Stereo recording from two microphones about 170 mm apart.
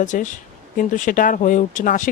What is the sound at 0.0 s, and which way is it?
Speech, 50° left (ahead or behind).